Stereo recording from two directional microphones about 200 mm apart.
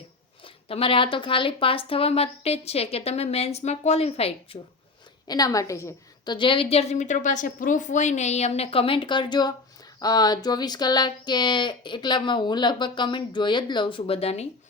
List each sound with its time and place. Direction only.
0.4 s speech: 25° left (ahead or behind)
5.3 s speech: 15° left (ahead or behind)